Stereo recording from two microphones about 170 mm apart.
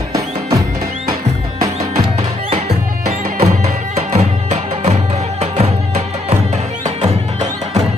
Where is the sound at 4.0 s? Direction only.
40° right (ahead or behind).